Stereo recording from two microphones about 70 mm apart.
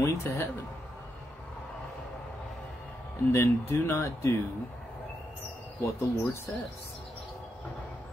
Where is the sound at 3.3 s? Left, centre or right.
Left.